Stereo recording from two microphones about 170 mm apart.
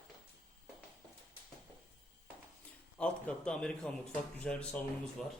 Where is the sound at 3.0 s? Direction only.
5° left (ahead or behind).